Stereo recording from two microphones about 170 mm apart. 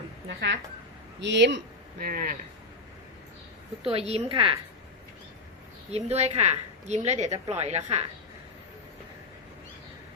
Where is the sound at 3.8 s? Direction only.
35° right (ahead or behind).